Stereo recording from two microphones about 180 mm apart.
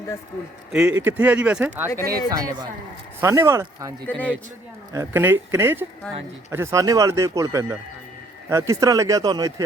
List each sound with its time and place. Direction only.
0.7 s speech: 5° right (ahead or behind)
2.0 s speech: 20° right (ahead or behind)
4.0 s a man's voice: 10° left (ahead or behind)
4.9 s speech: 15° right (ahead or behind)